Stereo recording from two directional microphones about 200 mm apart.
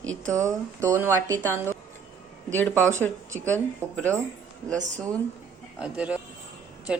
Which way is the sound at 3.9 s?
5° left (ahead or behind).